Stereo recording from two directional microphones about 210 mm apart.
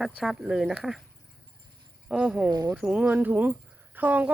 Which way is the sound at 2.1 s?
5° right (ahead or behind).